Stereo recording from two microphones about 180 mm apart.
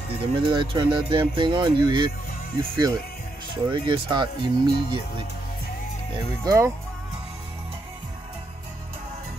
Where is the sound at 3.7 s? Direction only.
25° right (ahead or behind).